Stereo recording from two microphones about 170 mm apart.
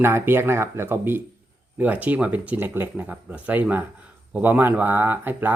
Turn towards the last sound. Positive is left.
turn(degrees=-10)  # may be behind; listen again after turning